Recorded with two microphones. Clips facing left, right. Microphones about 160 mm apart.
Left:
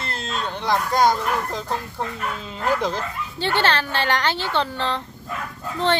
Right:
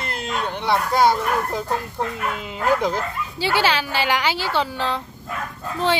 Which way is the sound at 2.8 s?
5° right (ahead or behind).